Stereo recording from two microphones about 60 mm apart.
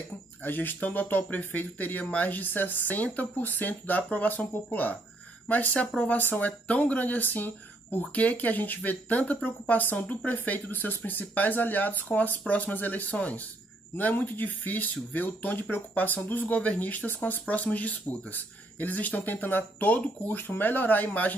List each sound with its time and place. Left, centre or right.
0.4 s speech: left